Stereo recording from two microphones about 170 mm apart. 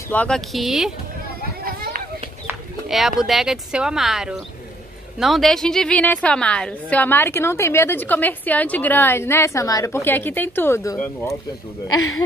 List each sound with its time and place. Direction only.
0.1 s speech: 5° left (ahead or behind)
1.6 s children playing: 60° right (ahead or behind)
2.9 s a woman's voice: centre (ahead or behind); by 11.0 s 15° left (ahead or behind)